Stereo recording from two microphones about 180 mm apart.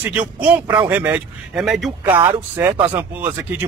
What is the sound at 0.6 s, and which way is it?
Speech, 20° right (ahead or behind).